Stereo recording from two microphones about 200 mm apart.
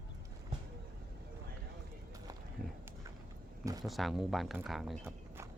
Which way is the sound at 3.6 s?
20° right (ahead or behind).